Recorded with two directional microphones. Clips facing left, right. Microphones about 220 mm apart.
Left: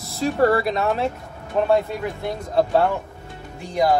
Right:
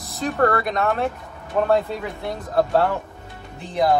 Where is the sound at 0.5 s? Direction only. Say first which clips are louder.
Left 2 dB; 30° left (ahead or behind).